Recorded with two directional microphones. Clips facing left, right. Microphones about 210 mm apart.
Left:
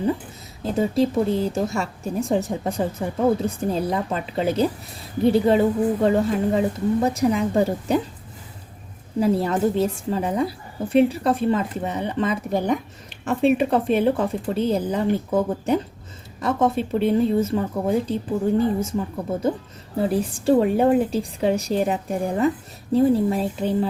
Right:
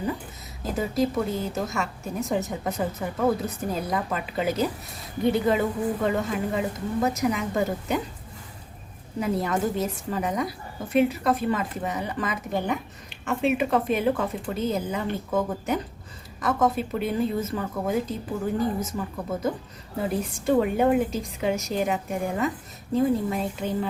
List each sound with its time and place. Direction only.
0.6 s a woman's voice: 30° left (ahead or behind)
9.2 s a woman's voice: 30° left (ahead or behind)